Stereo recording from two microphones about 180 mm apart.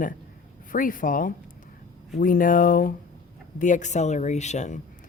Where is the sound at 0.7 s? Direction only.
50° left (ahead or behind).